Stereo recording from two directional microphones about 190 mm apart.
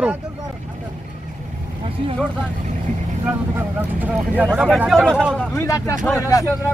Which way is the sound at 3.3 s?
10° right (ahead or behind).